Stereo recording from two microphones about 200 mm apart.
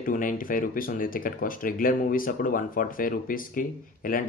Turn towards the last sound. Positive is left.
turn(degrees=45)  # may be behind; listen again after turning